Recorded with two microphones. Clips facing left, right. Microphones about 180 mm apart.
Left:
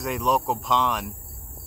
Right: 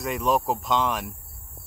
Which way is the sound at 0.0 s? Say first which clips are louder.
Even; centre (ahead or behind).